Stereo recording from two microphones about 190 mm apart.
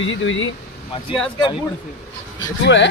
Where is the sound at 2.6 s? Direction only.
70° left (ahead or behind).